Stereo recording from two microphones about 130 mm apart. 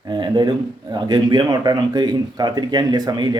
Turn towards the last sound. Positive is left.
turn(degrees=-30)  # may be behind; listen again after turning